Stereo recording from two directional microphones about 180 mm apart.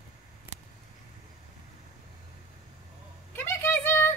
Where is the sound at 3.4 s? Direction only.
10° left (ahead or behind).